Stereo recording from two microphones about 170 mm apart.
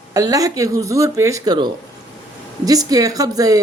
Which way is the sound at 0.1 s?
20° right (ahead or behind).